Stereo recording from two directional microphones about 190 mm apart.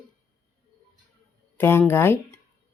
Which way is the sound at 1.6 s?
10° left (ahead or behind).